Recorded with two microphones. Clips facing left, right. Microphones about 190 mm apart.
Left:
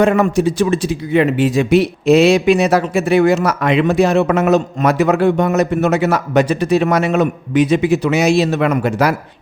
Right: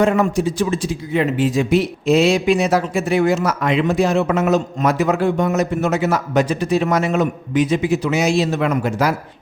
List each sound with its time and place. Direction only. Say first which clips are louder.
0.0 s speech: left 3 dB; 65° left (ahead or behind)